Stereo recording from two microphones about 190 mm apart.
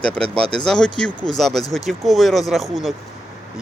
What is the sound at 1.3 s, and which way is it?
Speech, centre (ahead or behind).